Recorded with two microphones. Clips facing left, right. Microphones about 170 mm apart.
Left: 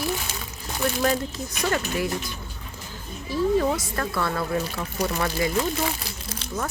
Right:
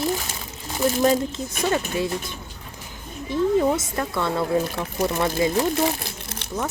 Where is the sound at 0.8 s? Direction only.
20° right (ahead or behind).